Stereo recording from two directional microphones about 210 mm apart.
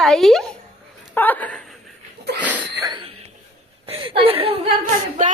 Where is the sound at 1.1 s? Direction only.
10° left (ahead or behind).